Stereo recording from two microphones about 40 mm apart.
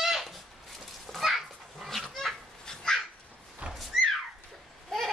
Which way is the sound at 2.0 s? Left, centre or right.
Centre.